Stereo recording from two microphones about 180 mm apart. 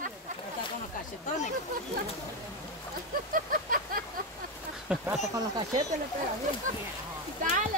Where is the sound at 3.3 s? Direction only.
50° right (ahead or behind).